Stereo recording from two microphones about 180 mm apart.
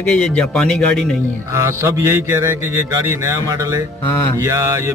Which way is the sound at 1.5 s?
15° right (ahead or behind).